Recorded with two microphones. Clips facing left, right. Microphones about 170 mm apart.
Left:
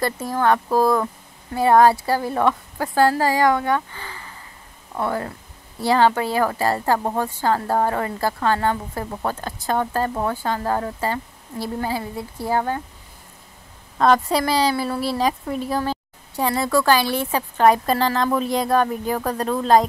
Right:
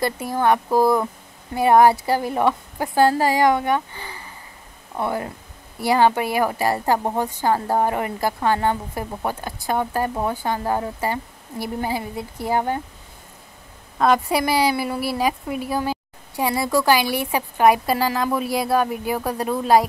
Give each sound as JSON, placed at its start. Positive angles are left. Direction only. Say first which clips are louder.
{"t": 0.0, "sound": "a woman's voice", "louder": "even", "side_deg": -15}
{"t": 13.9, "sound": "a woman's voice", "louder": "left 1 dB", "side_deg": -10}